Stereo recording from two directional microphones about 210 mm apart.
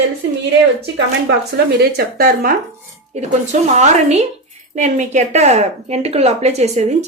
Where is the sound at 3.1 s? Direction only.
35° right (ahead or behind).